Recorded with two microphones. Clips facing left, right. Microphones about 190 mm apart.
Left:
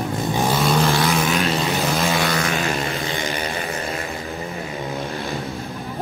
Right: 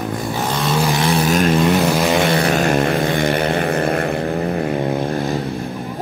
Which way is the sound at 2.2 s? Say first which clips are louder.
Right 6 dB; 30° right (ahead or behind).